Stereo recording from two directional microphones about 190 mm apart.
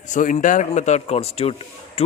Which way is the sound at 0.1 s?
40° left (ahead or behind).